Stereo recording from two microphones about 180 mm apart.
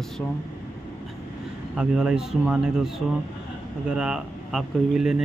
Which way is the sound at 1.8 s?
5° right (ahead or behind).